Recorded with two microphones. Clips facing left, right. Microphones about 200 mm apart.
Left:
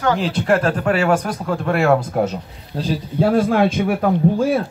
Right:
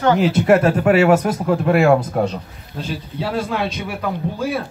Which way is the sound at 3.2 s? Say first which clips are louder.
Left 7 dB; 50° left (ahead or behind).